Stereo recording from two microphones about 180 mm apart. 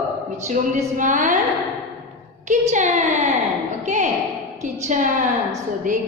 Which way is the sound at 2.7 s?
40° right (ahead or behind).